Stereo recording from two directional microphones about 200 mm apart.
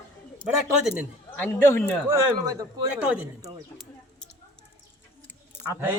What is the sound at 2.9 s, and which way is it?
Speech, 5° right (ahead or behind).